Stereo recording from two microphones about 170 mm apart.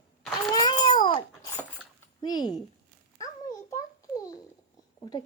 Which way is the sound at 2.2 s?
25° left (ahead or behind).